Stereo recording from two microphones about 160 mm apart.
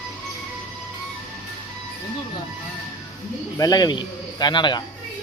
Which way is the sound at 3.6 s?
25° left (ahead or behind).